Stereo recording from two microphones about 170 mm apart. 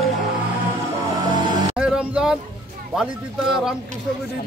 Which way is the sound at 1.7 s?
5° right (ahead or behind).